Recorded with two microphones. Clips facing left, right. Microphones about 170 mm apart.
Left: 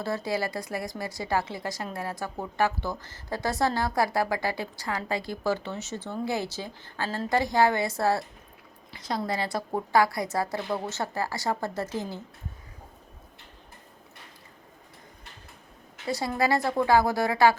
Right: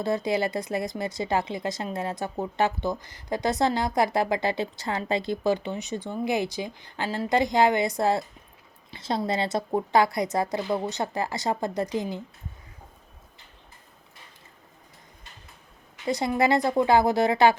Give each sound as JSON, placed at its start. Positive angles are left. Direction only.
{"t": 0.0, "sound": "speech", "side_deg": -20}
{"t": 16.0, "sound": "speech", "side_deg": -20}